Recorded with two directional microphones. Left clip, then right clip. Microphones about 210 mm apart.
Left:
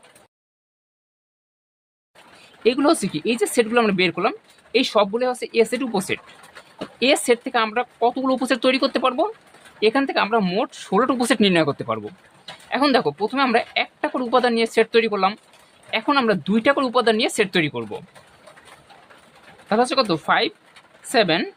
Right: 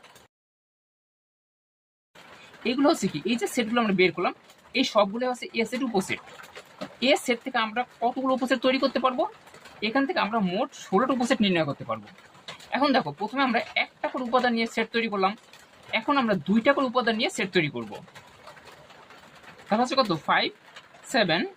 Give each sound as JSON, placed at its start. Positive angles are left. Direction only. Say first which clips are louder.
{"t": 2.6, "sound": "speech", "louder": "left 6 dB", "side_deg": 35}
{"t": 19.6, "sound": "speech", "louder": "left 5 dB", "side_deg": 40}